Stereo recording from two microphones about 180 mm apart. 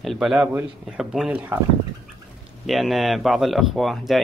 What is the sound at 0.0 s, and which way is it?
Speech, centre (ahead or behind).